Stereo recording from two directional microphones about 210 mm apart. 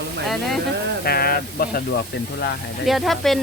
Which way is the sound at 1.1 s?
45° left (ahead or behind).